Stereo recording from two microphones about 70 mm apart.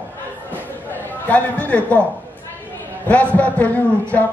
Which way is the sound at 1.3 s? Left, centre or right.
Left.